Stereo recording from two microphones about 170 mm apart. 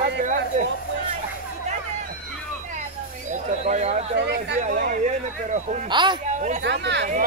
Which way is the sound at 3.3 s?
45° right (ahead or behind).